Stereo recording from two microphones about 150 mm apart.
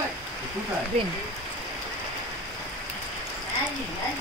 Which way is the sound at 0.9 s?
45° right (ahead or behind).